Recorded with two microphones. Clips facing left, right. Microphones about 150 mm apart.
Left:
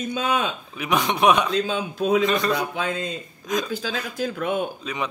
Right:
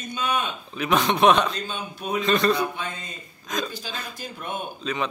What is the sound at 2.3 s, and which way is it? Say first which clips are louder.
Speech: right 2 dB; 10° left (ahead or behind).